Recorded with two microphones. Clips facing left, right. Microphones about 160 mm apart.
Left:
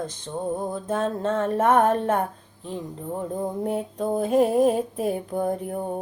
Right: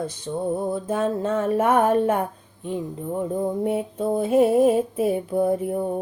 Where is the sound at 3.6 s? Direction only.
5° right (ahead or behind).